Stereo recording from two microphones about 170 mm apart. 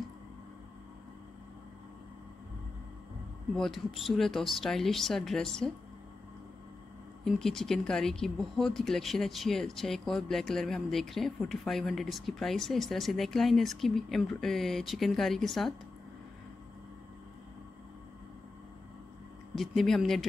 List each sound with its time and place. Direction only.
3.5 s speech: centre (ahead or behind)
7.2 s speech: centre (ahead or behind)
19.5 s speech: centre (ahead or behind)